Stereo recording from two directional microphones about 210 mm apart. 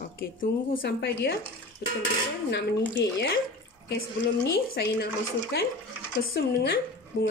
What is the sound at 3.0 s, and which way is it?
Speech, 55° left (ahead or behind).